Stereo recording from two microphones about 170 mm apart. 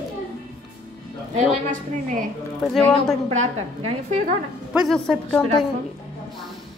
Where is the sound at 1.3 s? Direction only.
45° right (ahead or behind).